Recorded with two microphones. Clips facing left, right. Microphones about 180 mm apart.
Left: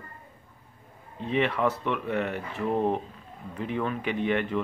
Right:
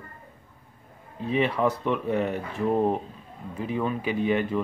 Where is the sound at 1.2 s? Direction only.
10° right (ahead or behind).